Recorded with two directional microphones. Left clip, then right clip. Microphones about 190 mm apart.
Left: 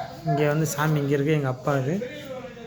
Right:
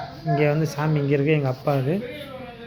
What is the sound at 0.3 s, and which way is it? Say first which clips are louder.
A man's voice: right 2 dB; centre (ahead or behind).